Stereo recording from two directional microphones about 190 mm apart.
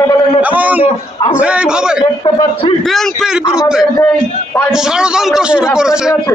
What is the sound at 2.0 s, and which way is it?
Speech, 25° left (ahead or behind).